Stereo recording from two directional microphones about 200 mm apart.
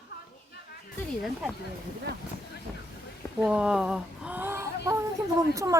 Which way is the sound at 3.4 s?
5° right (ahead or behind).